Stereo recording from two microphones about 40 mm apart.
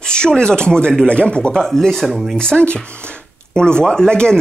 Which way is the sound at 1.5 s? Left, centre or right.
Centre.